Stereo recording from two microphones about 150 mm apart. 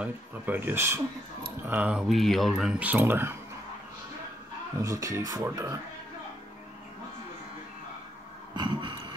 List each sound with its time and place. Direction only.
0.0 s speech: 10° right (ahead or behind)
4.8 s speech: 20° right (ahead or behind)
8.5 s a sound: 30° right (ahead or behind)